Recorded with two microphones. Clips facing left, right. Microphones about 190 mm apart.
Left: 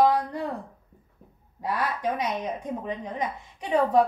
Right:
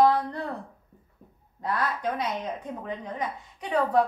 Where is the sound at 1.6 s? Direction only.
10° left (ahead or behind).